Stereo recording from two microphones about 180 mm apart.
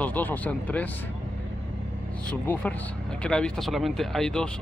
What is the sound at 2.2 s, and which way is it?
Speech, 5° left (ahead or behind).